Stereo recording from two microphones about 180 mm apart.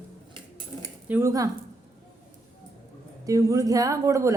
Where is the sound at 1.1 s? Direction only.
15° right (ahead or behind).